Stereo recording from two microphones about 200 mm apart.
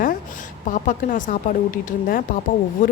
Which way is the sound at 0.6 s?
40° left (ahead or behind).